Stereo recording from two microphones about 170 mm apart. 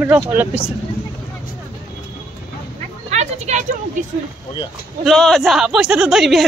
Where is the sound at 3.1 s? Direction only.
40° right (ahead or behind).